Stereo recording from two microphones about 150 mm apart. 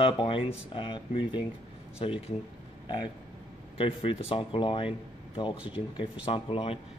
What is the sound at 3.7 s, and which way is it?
Speech, 35° left (ahead or behind).